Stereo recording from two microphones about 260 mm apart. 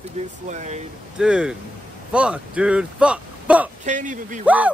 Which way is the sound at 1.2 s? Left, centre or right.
Centre.